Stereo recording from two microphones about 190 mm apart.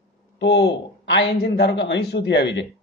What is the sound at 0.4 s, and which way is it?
Speech, 60° left (ahead or behind).